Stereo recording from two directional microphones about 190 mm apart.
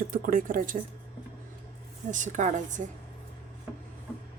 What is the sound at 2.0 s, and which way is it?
Speech, 40° right (ahead or behind).